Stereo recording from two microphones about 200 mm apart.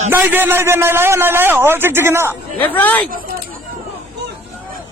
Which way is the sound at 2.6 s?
10° left (ahead or behind).